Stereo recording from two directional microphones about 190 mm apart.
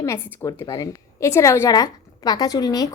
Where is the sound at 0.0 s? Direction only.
15° left (ahead or behind).